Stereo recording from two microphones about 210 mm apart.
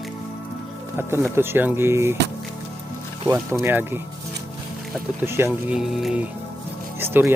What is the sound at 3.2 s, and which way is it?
Speech, 15° right (ahead or behind).